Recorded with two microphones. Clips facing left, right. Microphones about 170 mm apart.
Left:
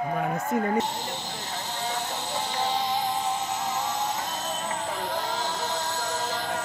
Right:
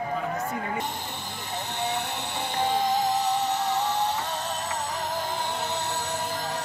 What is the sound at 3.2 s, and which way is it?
Music, 65° right (ahead or behind).